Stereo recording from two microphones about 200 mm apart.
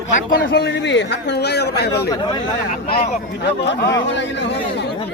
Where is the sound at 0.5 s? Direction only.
60° left (ahead or behind).